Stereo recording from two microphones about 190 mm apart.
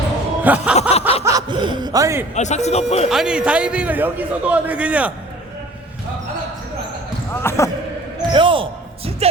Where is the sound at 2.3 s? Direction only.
35° left (ahead or behind).